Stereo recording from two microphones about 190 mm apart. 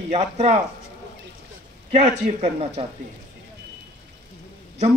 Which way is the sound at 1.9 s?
35° right (ahead or behind).